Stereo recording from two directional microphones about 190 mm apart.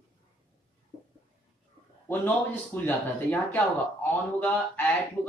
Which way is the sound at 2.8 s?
10° left (ahead or behind).